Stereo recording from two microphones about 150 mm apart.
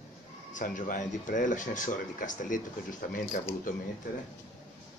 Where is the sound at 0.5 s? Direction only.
60° left (ahead or behind).